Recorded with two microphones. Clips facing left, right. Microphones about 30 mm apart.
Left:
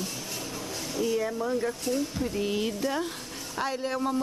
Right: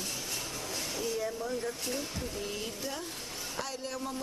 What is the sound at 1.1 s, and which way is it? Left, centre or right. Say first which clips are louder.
Speech: left 6 dB; centre.